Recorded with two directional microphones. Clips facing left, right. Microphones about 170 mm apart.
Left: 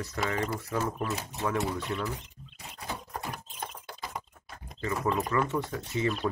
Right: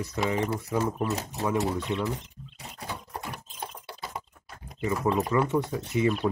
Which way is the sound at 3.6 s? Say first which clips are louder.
Right 2 dB; 5° right (ahead or behind).